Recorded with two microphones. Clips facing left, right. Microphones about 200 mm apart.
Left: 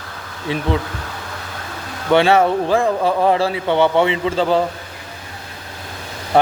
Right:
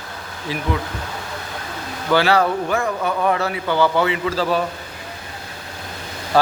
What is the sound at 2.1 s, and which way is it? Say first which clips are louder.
Speech: left 4 dB; 25° left (ahead or behind).